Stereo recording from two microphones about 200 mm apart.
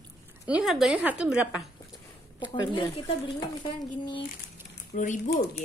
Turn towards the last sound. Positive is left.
turn(degrees=50)  # may be behind; listen again after turning